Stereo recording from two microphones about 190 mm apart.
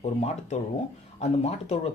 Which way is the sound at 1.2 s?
35° left (ahead or behind).